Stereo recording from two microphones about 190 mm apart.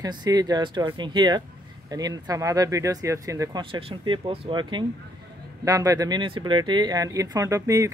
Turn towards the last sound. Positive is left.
turn(degrees=-15)  # may be behind; listen again after turning